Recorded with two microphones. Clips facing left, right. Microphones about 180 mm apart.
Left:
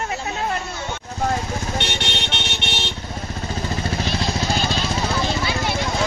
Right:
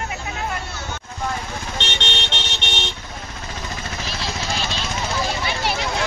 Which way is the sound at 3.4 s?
35° left (ahead or behind).